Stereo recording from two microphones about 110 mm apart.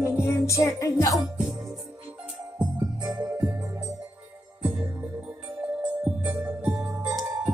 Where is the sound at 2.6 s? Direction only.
15° right (ahead or behind).